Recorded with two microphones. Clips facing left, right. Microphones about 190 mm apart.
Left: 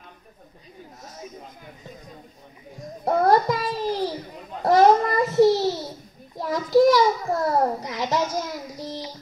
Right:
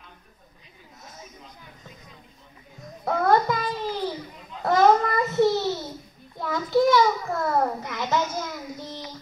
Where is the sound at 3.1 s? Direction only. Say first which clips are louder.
Left 2 dB; 35° left (ahead or behind).